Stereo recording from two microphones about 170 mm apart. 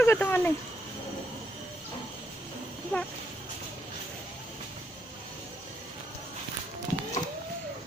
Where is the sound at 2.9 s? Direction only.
10° left (ahead or behind).